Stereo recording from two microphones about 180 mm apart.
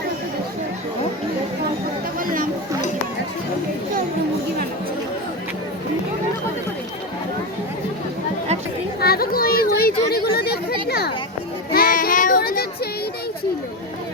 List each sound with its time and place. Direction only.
2.1 s chatter: 50° right (ahead or behind)
9.0 s a sound: 55° left (ahead or behind)
11.7 s child singing: 55° left (ahead or behind)